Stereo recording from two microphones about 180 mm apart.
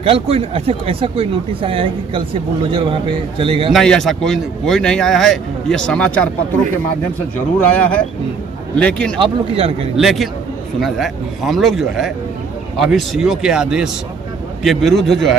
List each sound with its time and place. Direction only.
0.0 s speech: 30° right (ahead or behind)
3.7 s a man's voice: 5° left (ahead or behind)
7.7 s a man's voice: 5° left (ahead or behind)
9.2 s speech: 30° right (ahead or behind)
9.9 s a man's voice: centre (ahead or behind)